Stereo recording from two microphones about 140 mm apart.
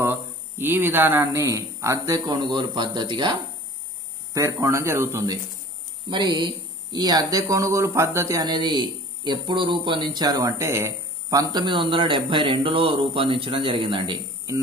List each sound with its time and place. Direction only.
0.0 s speech: 15° right (ahead or behind)
6.0 s speech: 35° right (ahead or behind)
11.5 s a man's voice: 35° right (ahead or behind)